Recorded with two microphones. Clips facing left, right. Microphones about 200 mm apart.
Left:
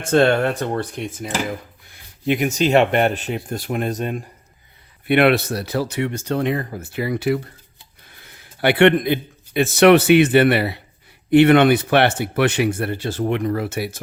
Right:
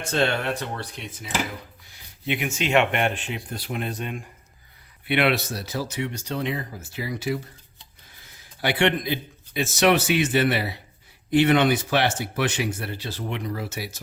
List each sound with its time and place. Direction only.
0.0 s a man's voice: 50° left (ahead or behind)